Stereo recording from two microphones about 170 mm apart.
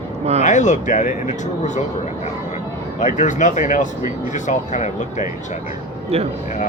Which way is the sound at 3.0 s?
45° left (ahead or behind).